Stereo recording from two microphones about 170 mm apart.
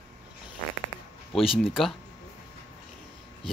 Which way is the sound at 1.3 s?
35° left (ahead or behind).